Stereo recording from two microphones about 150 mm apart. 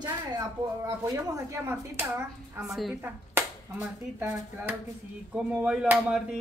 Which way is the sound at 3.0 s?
15° right (ahead or behind).